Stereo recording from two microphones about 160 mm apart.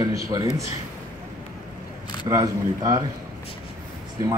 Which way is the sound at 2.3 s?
25° right (ahead or behind).